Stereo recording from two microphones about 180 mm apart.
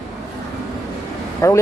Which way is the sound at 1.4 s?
15° left (ahead or behind).